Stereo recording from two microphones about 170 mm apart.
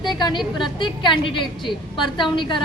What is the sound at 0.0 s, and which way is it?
A woman's voice, 25° left (ahead or behind).